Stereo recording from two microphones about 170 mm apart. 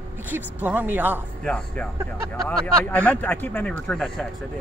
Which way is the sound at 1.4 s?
5° left (ahead or behind).